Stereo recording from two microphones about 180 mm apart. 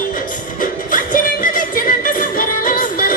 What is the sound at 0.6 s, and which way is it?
Music, 50° left (ahead or behind).